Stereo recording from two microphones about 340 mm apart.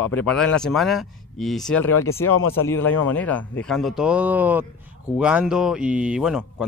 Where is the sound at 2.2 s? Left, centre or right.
Left.